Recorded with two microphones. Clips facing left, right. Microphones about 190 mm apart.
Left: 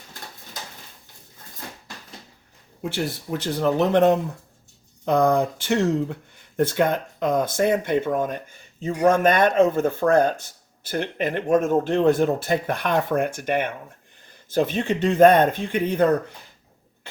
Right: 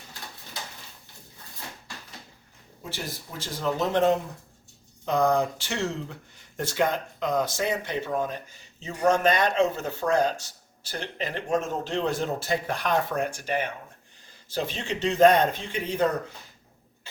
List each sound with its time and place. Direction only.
2.9 s speech: 65° left (ahead or behind)